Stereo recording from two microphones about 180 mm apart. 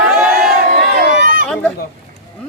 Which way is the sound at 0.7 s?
50° right (ahead or behind).